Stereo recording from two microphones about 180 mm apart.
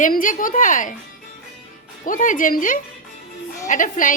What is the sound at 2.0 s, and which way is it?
A woman's voice, 50° left (ahead or behind).